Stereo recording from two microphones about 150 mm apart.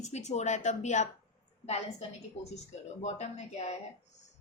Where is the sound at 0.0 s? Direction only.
50° left (ahead or behind).